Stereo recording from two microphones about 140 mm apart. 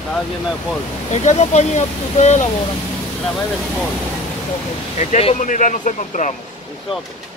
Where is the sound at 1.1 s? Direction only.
55° left (ahead or behind).